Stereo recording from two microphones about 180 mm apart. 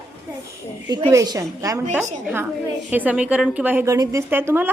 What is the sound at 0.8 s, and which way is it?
A woman's voice, 25° right (ahead or behind).